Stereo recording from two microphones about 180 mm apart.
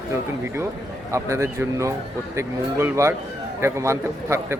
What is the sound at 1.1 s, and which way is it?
A man's voice, 15° right (ahead or behind).